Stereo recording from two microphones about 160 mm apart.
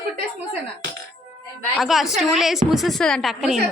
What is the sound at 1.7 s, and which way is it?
A woman's voice, centre (ahead or behind).